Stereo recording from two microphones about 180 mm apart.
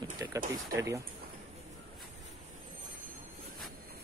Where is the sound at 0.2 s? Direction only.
20° right (ahead or behind).